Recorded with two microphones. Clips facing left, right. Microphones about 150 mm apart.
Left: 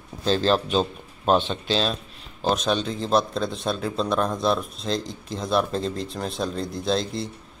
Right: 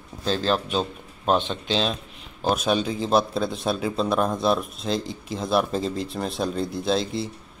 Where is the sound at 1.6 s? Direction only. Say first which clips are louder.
Even; 15° right (ahead or behind).